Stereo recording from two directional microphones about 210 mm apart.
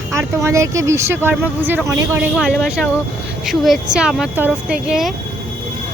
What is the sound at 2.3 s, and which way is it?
Speech, centre (ahead or behind).